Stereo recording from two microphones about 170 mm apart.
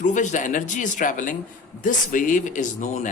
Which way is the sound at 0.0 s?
45° left (ahead or behind).